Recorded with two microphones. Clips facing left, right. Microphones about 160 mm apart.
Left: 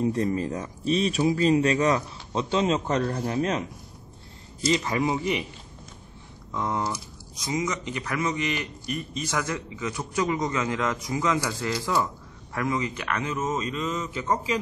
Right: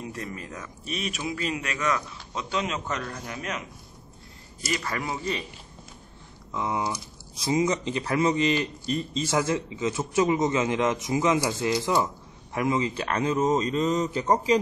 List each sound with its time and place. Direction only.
0.0 s speech: 30° left (ahead or behind)
4.6 s speech: 20° left (ahead or behind)
6.5 s speech: 10° right (ahead or behind)
7.3 s a man's voice: 30° right (ahead or behind)